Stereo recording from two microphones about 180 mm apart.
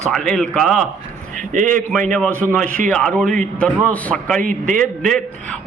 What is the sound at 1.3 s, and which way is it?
Speech, 45° right (ahead or behind).